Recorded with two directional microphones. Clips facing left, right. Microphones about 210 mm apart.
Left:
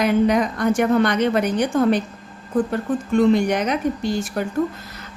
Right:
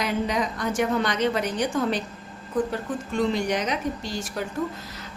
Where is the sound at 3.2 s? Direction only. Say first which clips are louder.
Left 7 dB; 55° left (ahead or behind).